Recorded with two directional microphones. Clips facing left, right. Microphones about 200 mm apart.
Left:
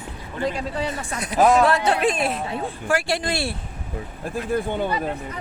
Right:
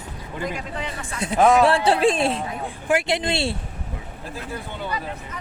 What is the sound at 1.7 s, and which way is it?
A woman's voice, 30° right (ahead or behind).